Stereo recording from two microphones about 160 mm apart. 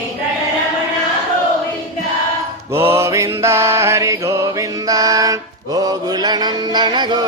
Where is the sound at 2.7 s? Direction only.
15° right (ahead or behind).